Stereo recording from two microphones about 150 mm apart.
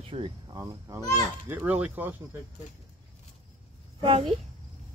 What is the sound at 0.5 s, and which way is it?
Speech, 20° right (ahead or behind).